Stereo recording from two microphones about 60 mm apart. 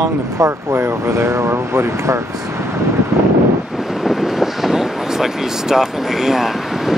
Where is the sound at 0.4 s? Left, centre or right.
Right.